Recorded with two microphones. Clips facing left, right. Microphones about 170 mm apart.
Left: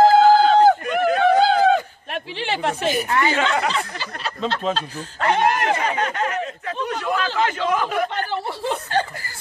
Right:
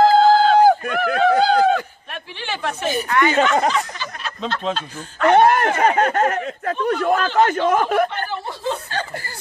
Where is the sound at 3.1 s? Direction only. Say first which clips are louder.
Right 5 dB; 30° left (ahead or behind).